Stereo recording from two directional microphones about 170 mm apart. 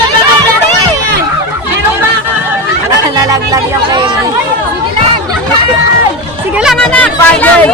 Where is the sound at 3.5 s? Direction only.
25° right (ahead or behind).